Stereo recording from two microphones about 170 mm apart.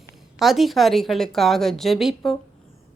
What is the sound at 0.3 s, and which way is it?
A woman's voice, centre (ahead or behind).